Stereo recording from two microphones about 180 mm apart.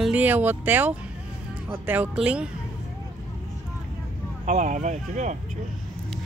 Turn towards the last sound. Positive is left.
turn(degrees=-40)  # may be behind; listen again after turning